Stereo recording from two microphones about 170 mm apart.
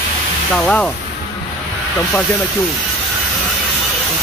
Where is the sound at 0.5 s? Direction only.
5° left (ahead or behind).